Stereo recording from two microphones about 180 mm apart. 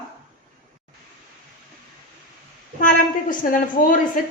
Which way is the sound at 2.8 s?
45° left (ahead or behind).